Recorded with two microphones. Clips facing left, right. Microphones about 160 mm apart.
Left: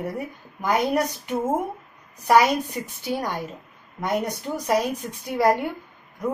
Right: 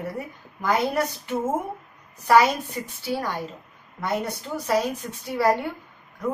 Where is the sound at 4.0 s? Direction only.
15° left (ahead or behind).